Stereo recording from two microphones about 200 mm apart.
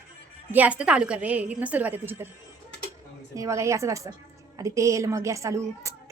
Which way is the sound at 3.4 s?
15° right (ahead or behind).